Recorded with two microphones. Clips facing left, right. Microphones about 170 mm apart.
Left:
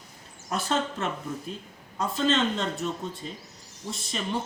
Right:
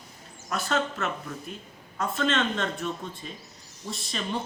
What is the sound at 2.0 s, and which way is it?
Speech, 25° left (ahead or behind).